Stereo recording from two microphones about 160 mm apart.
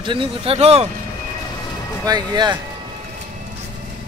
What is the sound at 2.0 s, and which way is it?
Speech, 25° right (ahead or behind).